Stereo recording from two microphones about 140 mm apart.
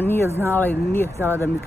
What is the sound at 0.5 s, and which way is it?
Speech, 15° left (ahead or behind).